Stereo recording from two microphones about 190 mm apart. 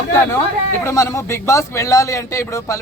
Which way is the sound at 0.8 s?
15° left (ahead or behind).